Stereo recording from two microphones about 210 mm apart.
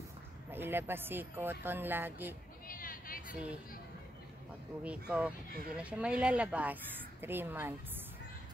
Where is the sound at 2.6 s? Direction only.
40° left (ahead or behind).